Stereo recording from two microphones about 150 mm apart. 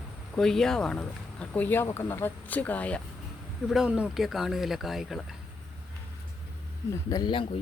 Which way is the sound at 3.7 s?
5° right (ahead or behind).